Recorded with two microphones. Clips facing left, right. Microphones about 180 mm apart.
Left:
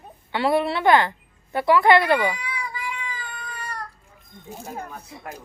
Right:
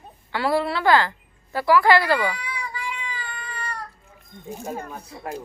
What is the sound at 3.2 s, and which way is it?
Cat, 5° left (ahead or behind).